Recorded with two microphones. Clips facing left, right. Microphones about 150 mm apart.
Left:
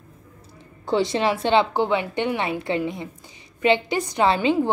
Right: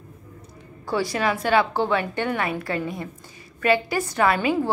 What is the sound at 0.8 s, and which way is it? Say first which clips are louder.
A woman's voice: left 3 dB; 25° left (ahead or behind).